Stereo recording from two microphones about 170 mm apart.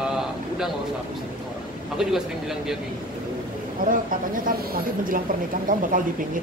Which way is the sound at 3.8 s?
55° right (ahead or behind).